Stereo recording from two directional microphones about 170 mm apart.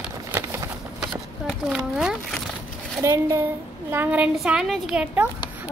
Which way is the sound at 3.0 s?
15° right (ahead or behind).